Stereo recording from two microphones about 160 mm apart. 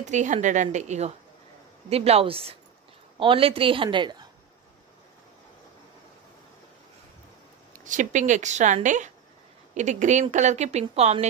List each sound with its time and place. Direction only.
0.0 s a woman's voice: 50° right (ahead or behind); by 4.3 s 30° right (ahead or behind)
7.7 s speech: 55° right (ahead or behind)